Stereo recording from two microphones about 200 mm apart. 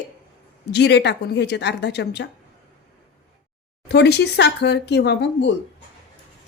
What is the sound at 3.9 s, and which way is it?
Speech, 55° left (ahead or behind).